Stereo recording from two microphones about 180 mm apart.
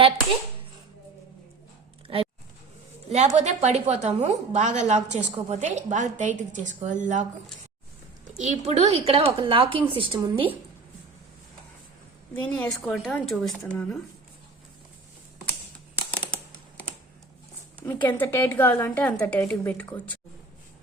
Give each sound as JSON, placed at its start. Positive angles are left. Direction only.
{"t": 3.1, "sound": "a woman's voice", "side_deg": -40}
{"t": 8.4, "sound": "a woman's voice", "side_deg": -40}
{"t": 12.4, "sound": "a woman's voice", "side_deg": 10}
{"t": 16.1, "sound": "a sound", "side_deg": 5}
{"t": 18.1, "sound": "a woman's voice", "side_deg": 10}